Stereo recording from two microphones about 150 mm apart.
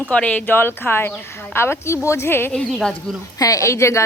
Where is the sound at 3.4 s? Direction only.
20° left (ahead or behind).